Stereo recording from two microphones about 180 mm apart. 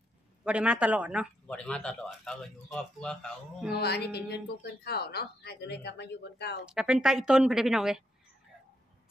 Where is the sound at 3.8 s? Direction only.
65° left (ahead or behind).